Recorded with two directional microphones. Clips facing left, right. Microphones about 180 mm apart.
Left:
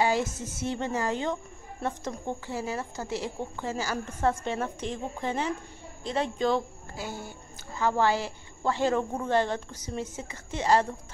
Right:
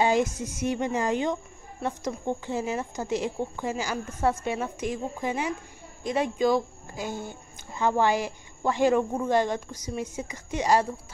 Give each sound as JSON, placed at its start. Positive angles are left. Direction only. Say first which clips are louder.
{"t": 0.0, "sound": "a woman's voice", "louder": "right 3 dB", "side_deg": -15}